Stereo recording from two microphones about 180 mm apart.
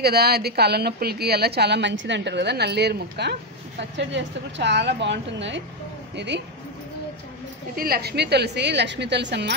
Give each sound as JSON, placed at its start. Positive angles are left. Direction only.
{"t": 0.0, "sound": "a woman's voice", "side_deg": -60}
{"t": 3.9, "sound": "a woman's voice", "side_deg": -80}
{"t": 7.7, "sound": "a woman's voice", "side_deg": -55}